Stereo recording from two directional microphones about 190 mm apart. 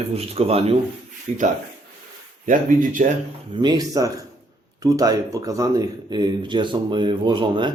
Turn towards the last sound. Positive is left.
turn(degrees=-25)  # may be behind; listen again after turning